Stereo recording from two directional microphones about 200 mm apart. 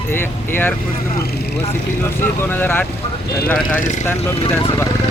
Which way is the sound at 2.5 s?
10° left (ahead or behind).